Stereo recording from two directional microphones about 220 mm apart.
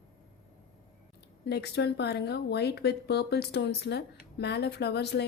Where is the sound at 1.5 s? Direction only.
50° left (ahead or behind).